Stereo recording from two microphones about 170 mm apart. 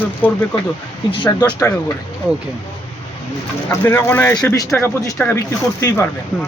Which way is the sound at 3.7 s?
15° left (ahead or behind).